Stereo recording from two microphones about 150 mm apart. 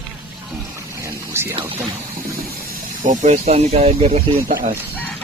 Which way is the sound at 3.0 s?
55° right (ahead or behind).